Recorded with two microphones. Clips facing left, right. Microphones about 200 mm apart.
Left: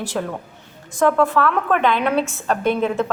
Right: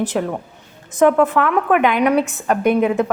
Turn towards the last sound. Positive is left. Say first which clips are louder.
# right 4 dB
turn(degrees=-15)  # may be behind; listen again after turning